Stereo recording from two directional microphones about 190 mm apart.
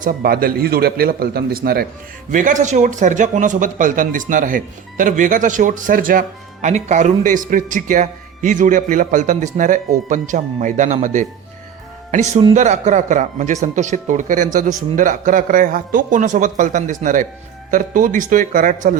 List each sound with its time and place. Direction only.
0.0 s speech: 50° right (ahead or behind)
2.3 s speech: 40° right (ahead or behind)